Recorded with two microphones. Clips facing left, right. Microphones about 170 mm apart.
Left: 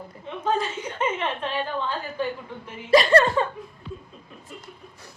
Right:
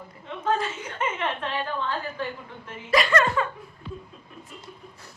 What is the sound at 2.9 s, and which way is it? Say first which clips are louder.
Speech: left 5 dB; 30° left (ahead or behind).